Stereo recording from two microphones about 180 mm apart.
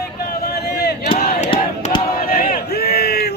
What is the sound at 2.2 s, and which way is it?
Crowd, 55° left (ahead or behind).